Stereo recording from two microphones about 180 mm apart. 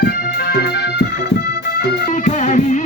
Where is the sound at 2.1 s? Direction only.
45° left (ahead or behind).